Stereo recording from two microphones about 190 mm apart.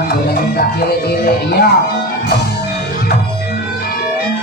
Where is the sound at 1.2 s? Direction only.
55° left (ahead or behind).